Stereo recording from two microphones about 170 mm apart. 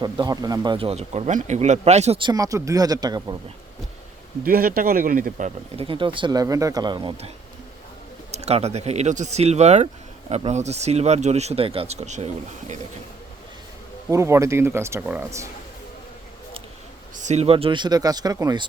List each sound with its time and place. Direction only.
0.0 s a man's voice: 25° right (ahead or behind)
4.4 s speech: 60° right (ahead or behind)
5.7 s a man's voice: 30° right (ahead or behind)
8.3 s speech: 40° right (ahead or behind)
14.1 s speech: 15° right (ahead or behind)
17.2 s a man's voice: 40° right (ahead or behind); by 18.7 s 25° right (ahead or behind)